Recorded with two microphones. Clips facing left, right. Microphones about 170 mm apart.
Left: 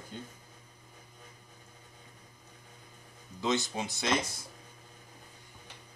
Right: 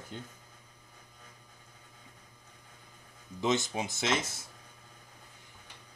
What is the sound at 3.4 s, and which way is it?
Speech, 20° right (ahead or behind).